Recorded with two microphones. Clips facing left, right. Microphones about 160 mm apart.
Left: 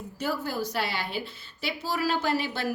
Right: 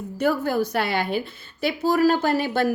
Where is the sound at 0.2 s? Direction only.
55° right (ahead or behind).